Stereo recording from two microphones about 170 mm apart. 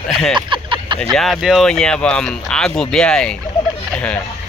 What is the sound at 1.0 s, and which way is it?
Speech, centre (ahead or behind).